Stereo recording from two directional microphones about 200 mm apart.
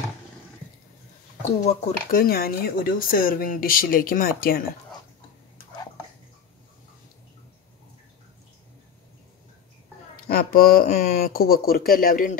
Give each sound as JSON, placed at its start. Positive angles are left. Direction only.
{"t": 1.7, "sound": "speech", "side_deg": 40}
{"t": 10.1, "sound": "speech", "side_deg": 45}